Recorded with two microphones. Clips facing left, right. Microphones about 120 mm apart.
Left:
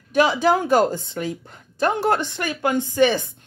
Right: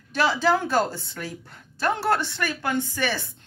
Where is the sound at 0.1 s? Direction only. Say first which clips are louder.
Left 4 dB; 15° left (ahead or behind).